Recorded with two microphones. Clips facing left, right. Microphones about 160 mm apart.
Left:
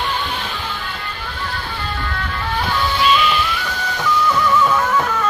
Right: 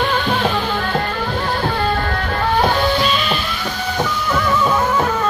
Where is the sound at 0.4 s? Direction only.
55° right (ahead or behind); by 3.3 s 40° right (ahead or behind).